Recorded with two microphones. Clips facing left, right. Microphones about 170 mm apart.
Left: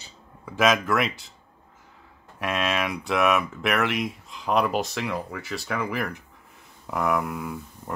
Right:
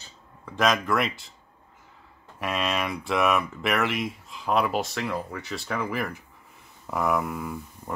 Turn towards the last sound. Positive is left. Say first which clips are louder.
# left 1 dB
turn(degrees=0)  # may be behind; listen again after turning